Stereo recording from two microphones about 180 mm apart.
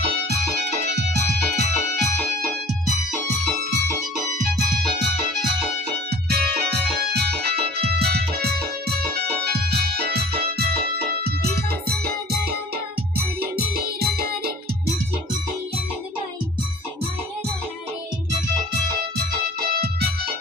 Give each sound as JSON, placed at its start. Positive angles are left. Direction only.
{"t": 1.4, "sound": "music", "side_deg": 5}
{"t": 6.3, "sound": "music", "side_deg": -60}
{"t": 19.8, "sound": "music", "side_deg": -60}